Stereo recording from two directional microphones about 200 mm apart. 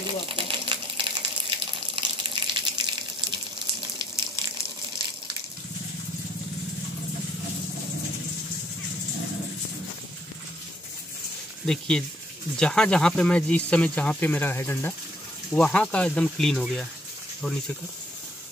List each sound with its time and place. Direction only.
0.0 s water: 25° right (ahead or behind)
11.6 s speech: 5° left (ahead or behind)